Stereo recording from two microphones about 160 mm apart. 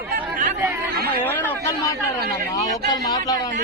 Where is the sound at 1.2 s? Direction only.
10° left (ahead or behind).